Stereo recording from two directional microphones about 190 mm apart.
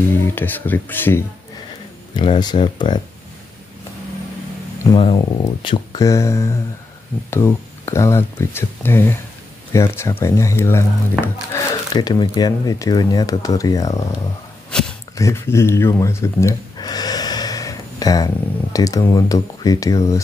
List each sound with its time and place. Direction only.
0.2 s speech: 10° left (ahead or behind)
2.1 s speech: 25° left (ahead or behind)
4.9 s speech: 25° left (ahead or behind)
14.7 s a sound: 5° left (ahead or behind)
15.1 s speech: 15° left (ahead or behind)